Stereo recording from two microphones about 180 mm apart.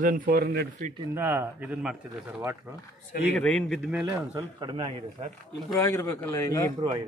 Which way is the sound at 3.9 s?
15° right (ahead or behind).